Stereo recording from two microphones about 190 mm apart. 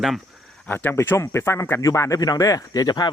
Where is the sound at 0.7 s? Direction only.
10° left (ahead or behind).